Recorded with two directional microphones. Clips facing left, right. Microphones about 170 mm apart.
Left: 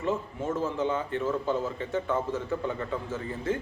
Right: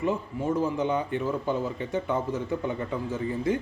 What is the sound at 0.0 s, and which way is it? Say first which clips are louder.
A man's voice: right 2 dB; 15° right (ahead or behind).